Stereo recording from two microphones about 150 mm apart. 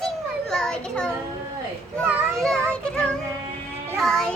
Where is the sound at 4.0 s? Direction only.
Centre (ahead or behind).